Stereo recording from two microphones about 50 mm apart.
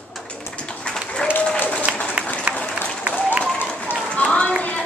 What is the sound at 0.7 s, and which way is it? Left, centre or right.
Applause, centre.